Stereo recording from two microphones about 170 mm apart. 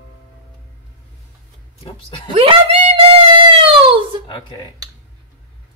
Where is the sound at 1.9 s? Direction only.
30° left (ahead or behind).